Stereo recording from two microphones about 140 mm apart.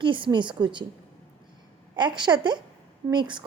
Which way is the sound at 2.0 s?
30° right (ahead or behind).